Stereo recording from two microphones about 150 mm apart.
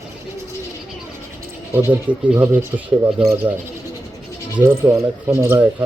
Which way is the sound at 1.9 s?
15° right (ahead or behind).